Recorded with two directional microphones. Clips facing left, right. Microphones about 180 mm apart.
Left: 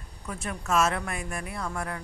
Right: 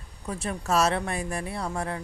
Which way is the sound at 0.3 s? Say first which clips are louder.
Right 2 dB; 30° right (ahead or behind).